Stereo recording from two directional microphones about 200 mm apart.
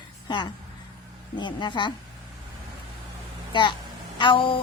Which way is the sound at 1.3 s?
20° left (ahead or behind).